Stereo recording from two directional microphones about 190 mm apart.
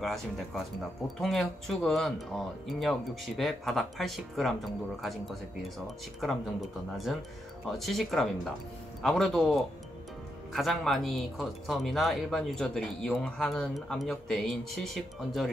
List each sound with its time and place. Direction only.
0.0 s speech: centre (ahead or behind)
7.7 s speech: centre (ahead or behind)